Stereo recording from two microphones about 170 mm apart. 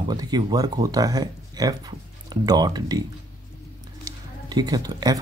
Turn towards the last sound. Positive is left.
turn(degrees=-25)  # may be behind; listen again after turning